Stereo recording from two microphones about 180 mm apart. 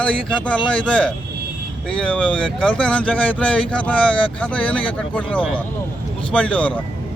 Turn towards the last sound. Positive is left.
turn(degrees=5)  # may be behind; listen again after turning